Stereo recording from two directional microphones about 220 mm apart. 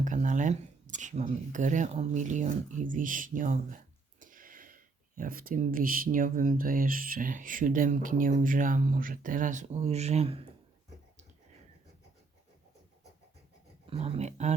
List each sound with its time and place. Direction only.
0.0 s speech: 35° right (ahead or behind)
13.9 s speech: 25° right (ahead or behind)